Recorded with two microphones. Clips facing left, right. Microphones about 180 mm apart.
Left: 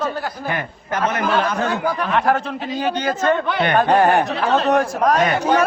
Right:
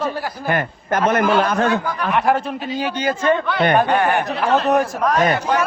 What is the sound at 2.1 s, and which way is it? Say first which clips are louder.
Speech: right 3 dB; 10° right (ahead or behind).